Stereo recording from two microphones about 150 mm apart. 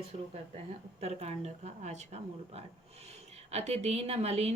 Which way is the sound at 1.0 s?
45° right (ahead or behind).